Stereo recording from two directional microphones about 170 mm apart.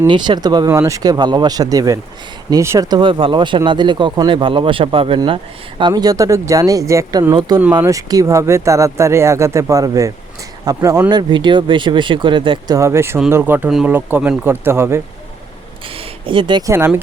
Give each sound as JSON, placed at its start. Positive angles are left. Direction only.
{"t": 0.1, "sound": "speech", "side_deg": -25}
{"t": 16.0, "sound": "a sound", "side_deg": -30}
{"t": 16.7, "sound": "speech", "side_deg": -15}